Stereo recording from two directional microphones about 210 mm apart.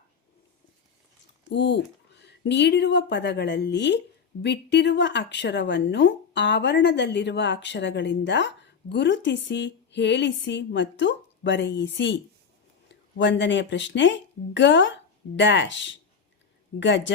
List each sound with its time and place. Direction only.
1.5 s speech: 55° left (ahead or behind)